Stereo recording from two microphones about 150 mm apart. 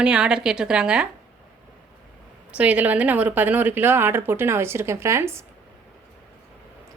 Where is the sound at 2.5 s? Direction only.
10° right (ahead or behind).